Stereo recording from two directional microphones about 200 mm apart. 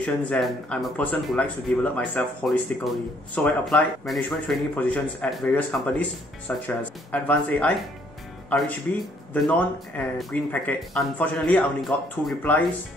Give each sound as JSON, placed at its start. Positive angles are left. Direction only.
{"t": 0.0, "sound": "speech", "side_deg": 5}